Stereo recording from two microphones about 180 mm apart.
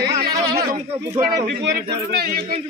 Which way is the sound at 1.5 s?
60° right (ahead or behind).